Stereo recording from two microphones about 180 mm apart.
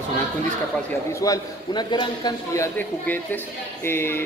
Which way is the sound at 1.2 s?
20° left (ahead or behind).